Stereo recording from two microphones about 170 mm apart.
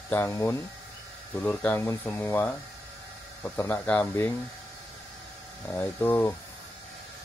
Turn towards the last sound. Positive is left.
turn(degrees=15)  # may be behind; listen again after turning